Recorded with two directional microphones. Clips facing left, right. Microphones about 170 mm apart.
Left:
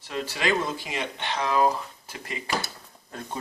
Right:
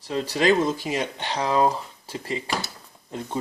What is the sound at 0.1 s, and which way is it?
Speech, 30° right (ahead or behind).